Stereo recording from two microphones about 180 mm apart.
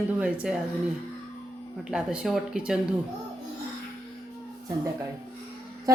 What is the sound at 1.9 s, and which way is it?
Speech, 5° right (ahead or behind).